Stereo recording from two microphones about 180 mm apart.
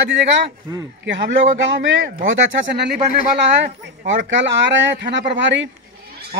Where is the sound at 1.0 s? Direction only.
85° right.